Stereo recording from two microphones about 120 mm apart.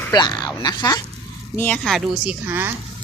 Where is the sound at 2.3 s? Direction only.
20° right (ahead or behind).